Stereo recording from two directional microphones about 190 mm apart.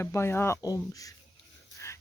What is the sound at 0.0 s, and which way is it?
Speech, 15° left (ahead or behind).